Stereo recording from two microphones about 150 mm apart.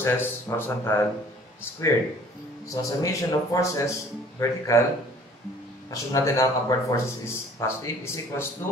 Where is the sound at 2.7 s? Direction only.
20° left (ahead or behind).